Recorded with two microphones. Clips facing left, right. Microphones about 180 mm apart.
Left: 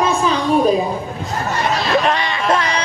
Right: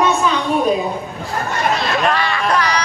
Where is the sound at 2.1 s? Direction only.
20° left (ahead or behind).